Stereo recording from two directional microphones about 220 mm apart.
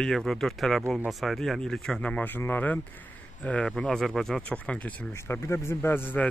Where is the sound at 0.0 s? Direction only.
Centre (ahead or behind).